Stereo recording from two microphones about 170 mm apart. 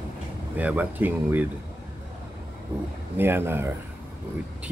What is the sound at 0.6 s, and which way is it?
Speech, 10° right (ahead or behind).